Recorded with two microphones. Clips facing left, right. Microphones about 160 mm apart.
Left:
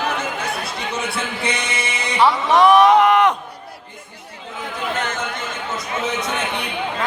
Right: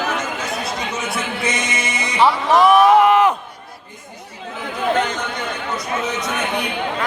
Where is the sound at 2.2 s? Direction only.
Centre (ahead or behind).